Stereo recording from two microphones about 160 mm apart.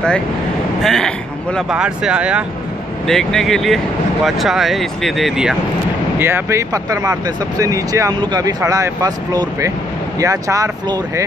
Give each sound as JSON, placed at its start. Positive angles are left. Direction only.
{"t": 0.8, "sound": "speech", "side_deg": 5}
{"t": 6.1, "sound": "speech", "side_deg": -15}